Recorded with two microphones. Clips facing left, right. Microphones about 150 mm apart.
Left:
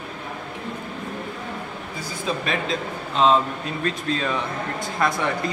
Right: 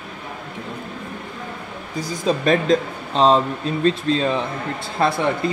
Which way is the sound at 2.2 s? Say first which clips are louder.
Right 8 dB; 40° right (ahead or behind).